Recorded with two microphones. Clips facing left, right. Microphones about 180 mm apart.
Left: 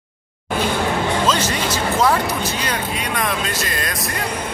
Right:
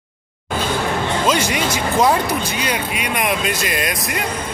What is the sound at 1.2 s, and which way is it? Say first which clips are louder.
Speech: right 1 dB; 15° right (ahead or behind).